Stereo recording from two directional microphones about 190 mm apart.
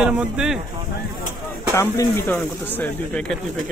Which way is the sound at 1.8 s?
10° left (ahead or behind).